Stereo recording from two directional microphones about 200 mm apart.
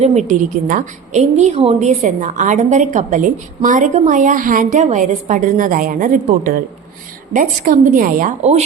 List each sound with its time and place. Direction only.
0.0 s a woman's voice: 35° right (ahead or behind)